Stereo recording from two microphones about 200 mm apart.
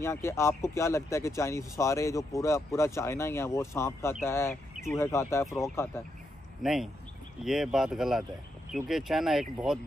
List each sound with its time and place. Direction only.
0.0 s speech: 15° left (ahead or behind)
6.6 s speech: centre (ahead or behind)